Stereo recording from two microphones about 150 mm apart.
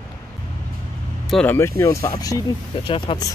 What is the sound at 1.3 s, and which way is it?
Speech, 5° left (ahead or behind).